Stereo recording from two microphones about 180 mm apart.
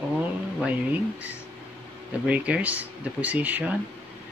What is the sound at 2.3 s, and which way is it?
Speech, 5° right (ahead or behind).